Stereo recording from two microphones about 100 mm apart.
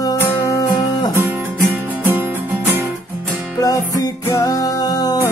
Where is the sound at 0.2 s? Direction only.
25° left (ahead or behind).